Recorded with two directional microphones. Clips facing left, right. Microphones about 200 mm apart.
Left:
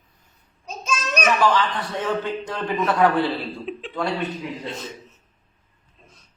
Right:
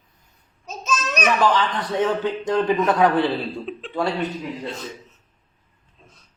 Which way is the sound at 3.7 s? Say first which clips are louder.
Left 1 dB; centre (ahead or behind).